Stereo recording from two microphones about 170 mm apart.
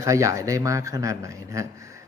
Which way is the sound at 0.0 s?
20° right (ahead or behind).